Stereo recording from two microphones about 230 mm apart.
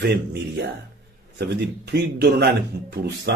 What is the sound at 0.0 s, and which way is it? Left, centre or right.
Speech, right.